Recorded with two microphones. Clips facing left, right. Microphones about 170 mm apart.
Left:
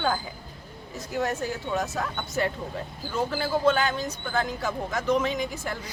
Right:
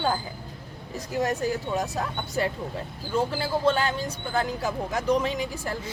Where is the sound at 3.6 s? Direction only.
30° right (ahead or behind).